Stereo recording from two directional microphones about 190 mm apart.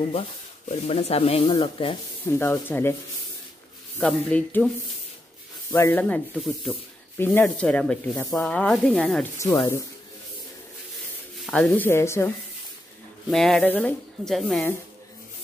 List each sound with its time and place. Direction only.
0.7 s speech: 35° left (ahead or behind)
2.2 s speech: 15° left (ahead or behind)
4.0 s speech: 5° left (ahead or behind)
5.7 s speech: 10° left (ahead or behind)
9.4 s speech: 15° left (ahead or behind)
11.4 s speech: 5° left (ahead or behind)
13.3 s speech: centre (ahead or behind)